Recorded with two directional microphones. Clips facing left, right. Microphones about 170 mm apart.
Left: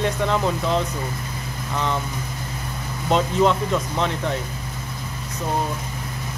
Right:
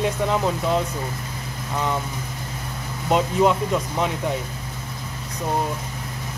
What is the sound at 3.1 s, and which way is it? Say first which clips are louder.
Speech: even; 10° right (ahead or behind).